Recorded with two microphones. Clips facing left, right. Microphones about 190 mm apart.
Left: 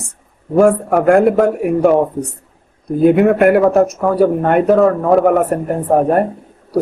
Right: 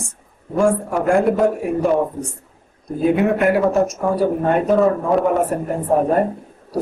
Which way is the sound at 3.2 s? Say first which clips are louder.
Left 6 dB; 55° left (ahead or behind).